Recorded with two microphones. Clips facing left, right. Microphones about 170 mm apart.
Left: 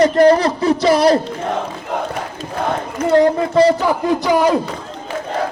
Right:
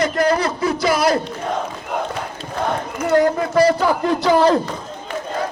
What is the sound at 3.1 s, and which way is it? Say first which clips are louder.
A man's voice: left 3 dB; 25° left (ahead or behind).